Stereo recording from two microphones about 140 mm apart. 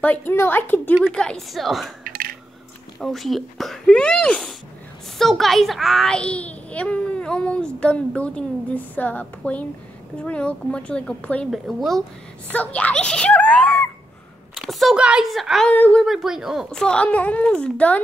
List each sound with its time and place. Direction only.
0.0 s a child's voice: 15° left (ahead or behind)
2.0 s squish: 90° right
3.0 s a child's voice: centre (ahead or behind)
12.4 s a child's voice: 10° left (ahead or behind)